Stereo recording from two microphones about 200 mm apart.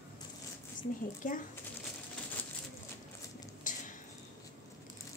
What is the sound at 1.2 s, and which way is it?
Speech, 40° left (ahead or behind).